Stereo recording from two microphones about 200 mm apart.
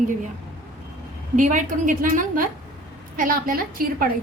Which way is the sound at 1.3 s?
40° right (ahead or behind).